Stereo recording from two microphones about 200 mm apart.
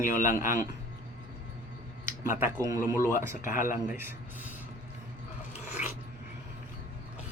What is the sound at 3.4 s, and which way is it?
Speech, 40° left (ahead or behind).